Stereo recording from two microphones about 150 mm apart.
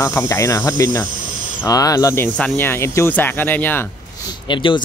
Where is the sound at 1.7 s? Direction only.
25° left (ahead or behind).